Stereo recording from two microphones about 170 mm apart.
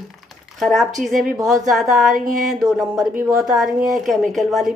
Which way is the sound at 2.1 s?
55° right (ahead or behind).